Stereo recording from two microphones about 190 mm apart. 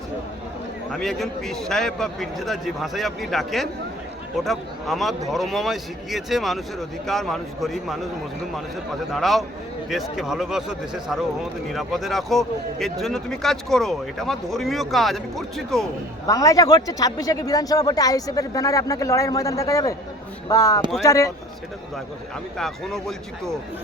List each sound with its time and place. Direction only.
0.9 s speech: centre (ahead or behind)
9.1 s speech: centre (ahead or behind)
16.2 s speech: 15° left (ahead or behind)
22.5 s speech: centre (ahead or behind)